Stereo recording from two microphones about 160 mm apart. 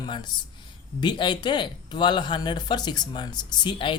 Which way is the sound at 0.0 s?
30° left (ahead or behind).